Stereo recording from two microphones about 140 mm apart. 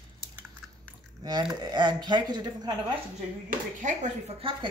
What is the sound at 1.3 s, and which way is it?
Speech, 30° right (ahead or behind).